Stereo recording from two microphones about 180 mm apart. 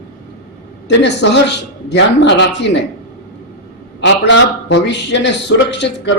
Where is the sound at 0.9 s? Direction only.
75° left (ahead or behind).